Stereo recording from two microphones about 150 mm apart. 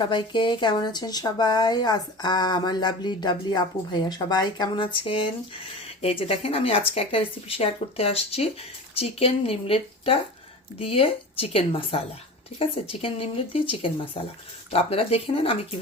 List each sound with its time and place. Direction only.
0.0 s speech: 30° left (ahead or behind)